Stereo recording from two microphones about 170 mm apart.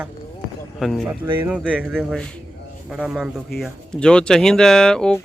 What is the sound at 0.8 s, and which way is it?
Speech, centre (ahead or behind).